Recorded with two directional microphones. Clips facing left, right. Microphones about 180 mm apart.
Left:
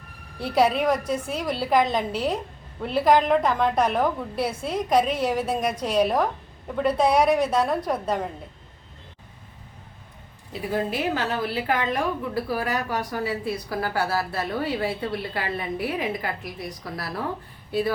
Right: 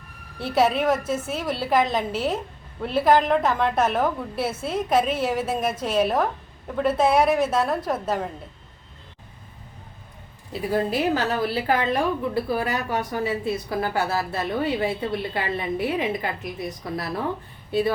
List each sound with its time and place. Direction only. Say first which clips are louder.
0.3 s a woman's voice: even; centre (ahead or behind)
10.7 s a woman's voice: right 3 dB; 40° right (ahead or behind)